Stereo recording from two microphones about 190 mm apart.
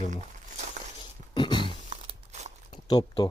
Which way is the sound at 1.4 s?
25° left (ahead or behind).